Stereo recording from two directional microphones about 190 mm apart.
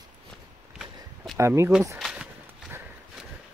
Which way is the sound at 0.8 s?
5° right (ahead or behind).